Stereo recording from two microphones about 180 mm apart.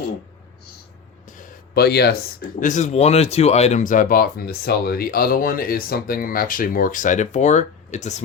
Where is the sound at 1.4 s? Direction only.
60° left (ahead or behind).